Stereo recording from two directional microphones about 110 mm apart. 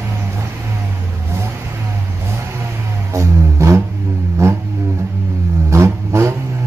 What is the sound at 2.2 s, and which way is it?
Vehicle, 25° right (ahead or behind).